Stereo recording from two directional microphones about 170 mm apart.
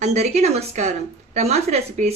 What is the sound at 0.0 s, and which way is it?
Speech, 40° right (ahead or behind).